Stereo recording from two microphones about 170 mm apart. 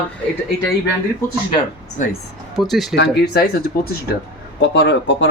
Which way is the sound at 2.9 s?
80° left.